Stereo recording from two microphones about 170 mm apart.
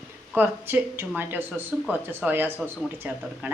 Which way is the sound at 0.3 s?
10° right (ahead or behind).